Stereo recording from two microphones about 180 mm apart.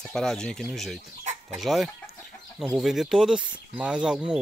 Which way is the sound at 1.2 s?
40° right (ahead or behind).